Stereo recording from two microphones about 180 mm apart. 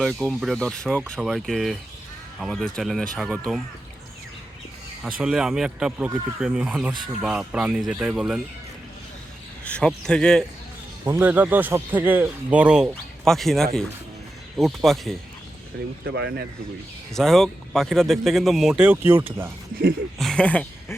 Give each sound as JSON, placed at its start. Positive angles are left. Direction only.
{"t": 0.0, "sound": "speech", "side_deg": 0}
{"t": 5.0, "sound": "speech", "side_deg": -5}
{"t": 9.6, "sound": "a man's voice", "side_deg": 5}
{"t": 11.0, "sound": "a man's voice", "side_deg": -10}
{"t": 16.0, "sound": "speech", "side_deg": -65}
{"t": 17.2, "sound": "speech", "side_deg": 0}
{"t": 20.1, "sound": "speech", "side_deg": 5}